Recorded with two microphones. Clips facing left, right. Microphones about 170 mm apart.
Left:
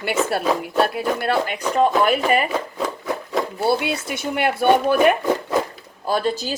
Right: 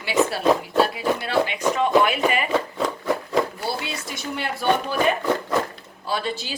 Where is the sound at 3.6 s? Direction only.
60° left (ahead or behind).